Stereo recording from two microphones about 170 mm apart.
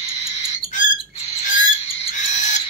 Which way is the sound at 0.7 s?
45° left (ahead or behind).